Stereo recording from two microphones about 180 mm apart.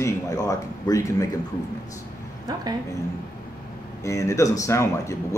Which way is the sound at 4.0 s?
15° left (ahead or behind).